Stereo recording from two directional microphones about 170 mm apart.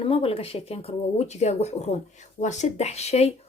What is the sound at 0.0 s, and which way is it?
Speech, 35° left (ahead or behind).